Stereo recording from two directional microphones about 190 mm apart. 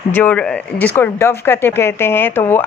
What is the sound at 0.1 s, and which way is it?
Speech, 10° left (ahead or behind).